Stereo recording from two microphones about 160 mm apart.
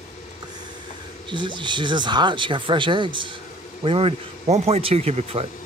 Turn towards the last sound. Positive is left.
turn(degrees=-40)  # may be behind; listen again after turning